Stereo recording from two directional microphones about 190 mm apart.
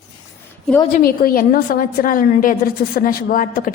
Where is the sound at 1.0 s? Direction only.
50° left (ahead or behind).